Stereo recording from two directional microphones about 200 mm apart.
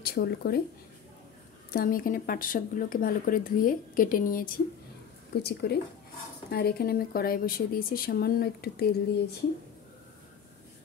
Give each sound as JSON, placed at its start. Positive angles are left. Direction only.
{"t": 0.0, "sound": "speech", "side_deg": 50}
{"t": 1.7, "sound": "speech", "side_deg": 45}
{"t": 5.4, "sound": "speech", "side_deg": 55}